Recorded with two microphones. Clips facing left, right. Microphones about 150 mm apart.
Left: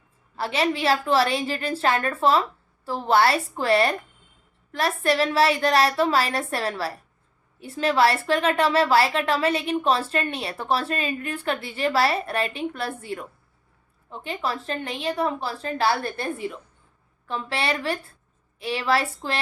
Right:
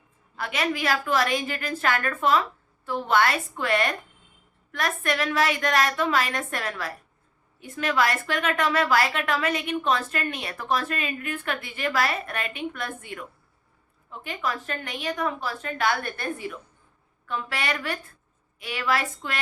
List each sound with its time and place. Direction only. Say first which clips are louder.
0.3 s a woman's voice: left 4 dB; 30° left (ahead or behind)